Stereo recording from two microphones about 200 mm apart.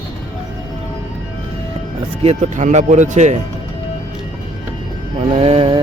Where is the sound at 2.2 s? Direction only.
35° right (ahead or behind).